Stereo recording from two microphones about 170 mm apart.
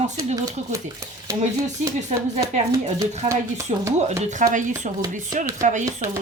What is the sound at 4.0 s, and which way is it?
Speech, 40° right (ahead or behind).